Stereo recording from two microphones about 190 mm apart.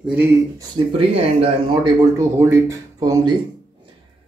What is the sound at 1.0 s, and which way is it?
Speech, 30° right (ahead or behind).